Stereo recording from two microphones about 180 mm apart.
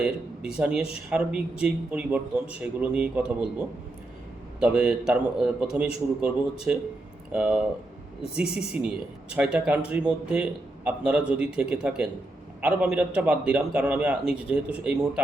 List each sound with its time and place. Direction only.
0.0 s a man's voice: 5° right (ahead or behind)
4.6 s a man's voice: 5° right (ahead or behind)